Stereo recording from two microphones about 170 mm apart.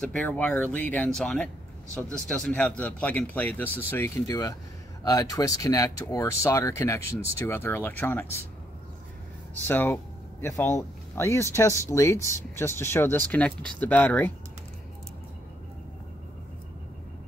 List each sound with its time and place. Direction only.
0.0 s speech: 10° left (ahead or behind)
9.7 s speech: 10° left (ahead or behind)